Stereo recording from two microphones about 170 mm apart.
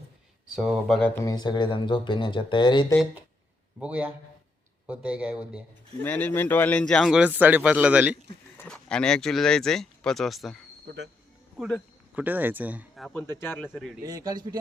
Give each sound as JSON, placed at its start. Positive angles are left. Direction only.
{"t": 0.4, "sound": "speech", "side_deg": -5}
{"t": 1.2, "sound": "speech", "side_deg": 25}
{"t": 3.8, "sound": "speech", "side_deg": -5}
{"t": 6.0, "sound": "speech", "side_deg": 10}
{"t": 8.5, "sound": "speech", "side_deg": 5}
{"t": 10.8, "sound": "speech", "side_deg": -85}
{"t": 11.5, "sound": "speech", "side_deg": 0}
{"t": 13.1, "sound": "speech", "side_deg": 10}
{"t": 14.0, "sound": "a man's voice", "side_deg": -20}